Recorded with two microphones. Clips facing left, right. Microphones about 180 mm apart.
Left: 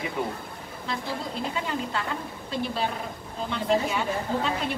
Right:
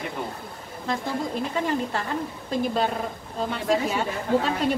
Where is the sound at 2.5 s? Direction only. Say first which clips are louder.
Right 4 dB; 45° right (ahead or behind).